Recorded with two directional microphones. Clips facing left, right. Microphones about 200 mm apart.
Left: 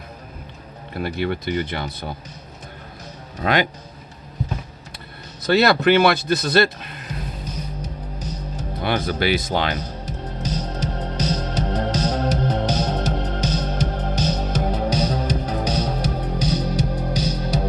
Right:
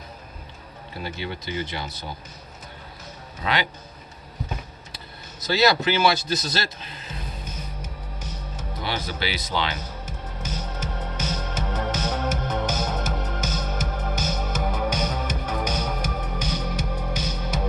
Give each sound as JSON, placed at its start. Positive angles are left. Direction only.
{"t": 0.9, "sound": "speech", "side_deg": 55}
{"t": 3.4, "sound": "speech", "side_deg": 50}
{"t": 5.4, "sound": "speech", "side_deg": 60}
{"t": 7.8, "sound": "music", "side_deg": 35}
{"t": 8.8, "sound": "speech", "side_deg": 50}
{"t": 9.7, "sound": "music", "side_deg": 35}